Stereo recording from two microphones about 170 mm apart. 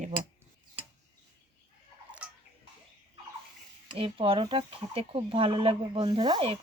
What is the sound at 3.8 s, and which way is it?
Speech, 30° right (ahead or behind).